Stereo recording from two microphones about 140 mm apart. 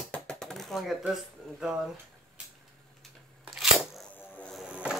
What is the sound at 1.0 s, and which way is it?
Speech, 5° right (ahead or behind).